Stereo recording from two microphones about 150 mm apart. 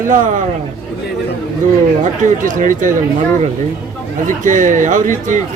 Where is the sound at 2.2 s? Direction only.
60° right (ahead or behind).